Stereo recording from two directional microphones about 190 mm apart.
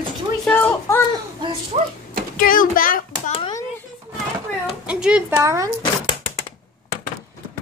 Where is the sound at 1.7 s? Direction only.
35° right (ahead or behind).